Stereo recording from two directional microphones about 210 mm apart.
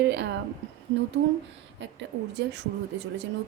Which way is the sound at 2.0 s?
55° right (ahead or behind).